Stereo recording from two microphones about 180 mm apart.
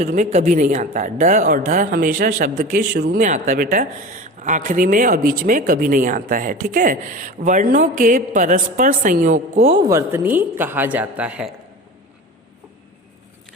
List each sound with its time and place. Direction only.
0.0 s speech: 45° right (ahead or behind)
9.7 s a woman's voice: 20° right (ahead or behind)